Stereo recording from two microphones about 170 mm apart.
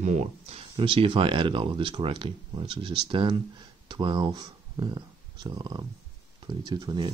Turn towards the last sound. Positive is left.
turn(degrees=-25)  # may be behind; listen again after turning